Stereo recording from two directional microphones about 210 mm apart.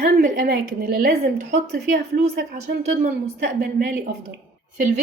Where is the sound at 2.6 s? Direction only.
35° right (ahead or behind).